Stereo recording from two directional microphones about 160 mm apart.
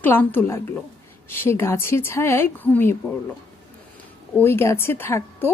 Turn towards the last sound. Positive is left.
turn(degrees=15)  # may be behind; listen again after turning